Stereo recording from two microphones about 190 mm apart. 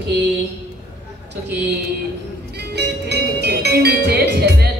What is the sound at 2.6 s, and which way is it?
Speech, 60° right (ahead or behind).